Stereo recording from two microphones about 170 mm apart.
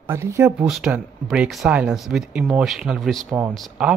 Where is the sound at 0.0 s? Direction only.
15° right (ahead or behind).